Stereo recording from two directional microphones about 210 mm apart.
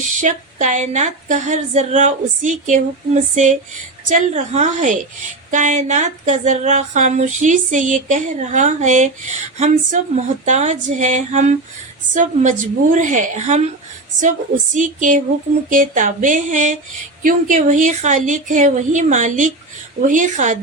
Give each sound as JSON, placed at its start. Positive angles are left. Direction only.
{"t": 0.1, "sound": "speech", "side_deg": -35}